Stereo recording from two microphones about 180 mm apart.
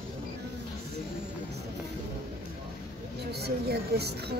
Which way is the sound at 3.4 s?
65° right (ahead or behind).